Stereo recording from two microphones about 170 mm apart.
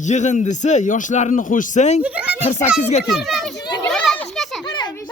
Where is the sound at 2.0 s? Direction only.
10° right (ahead or behind).